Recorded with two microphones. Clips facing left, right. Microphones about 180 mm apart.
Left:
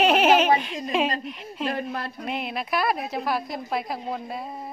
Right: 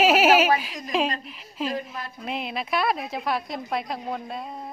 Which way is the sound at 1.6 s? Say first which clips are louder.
Left 2 dB; 65° left (ahead or behind).